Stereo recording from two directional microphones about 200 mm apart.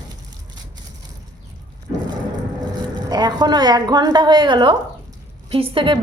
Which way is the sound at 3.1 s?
20° right (ahead or behind).